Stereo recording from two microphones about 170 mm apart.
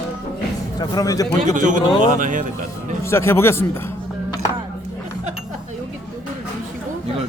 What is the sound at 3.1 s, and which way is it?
Speech, 15° left (ahead or behind).